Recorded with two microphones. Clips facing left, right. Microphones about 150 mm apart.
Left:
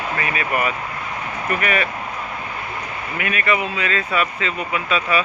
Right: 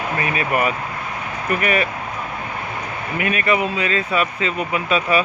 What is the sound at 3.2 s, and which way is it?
Speech, 35° right (ahead or behind).